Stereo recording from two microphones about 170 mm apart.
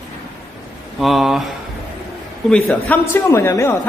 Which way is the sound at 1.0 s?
Centre (ahead or behind).